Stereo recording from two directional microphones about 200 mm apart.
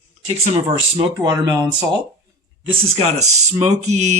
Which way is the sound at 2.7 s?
30° right (ahead or behind).